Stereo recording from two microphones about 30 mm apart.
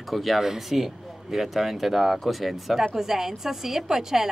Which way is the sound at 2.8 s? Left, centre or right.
Centre.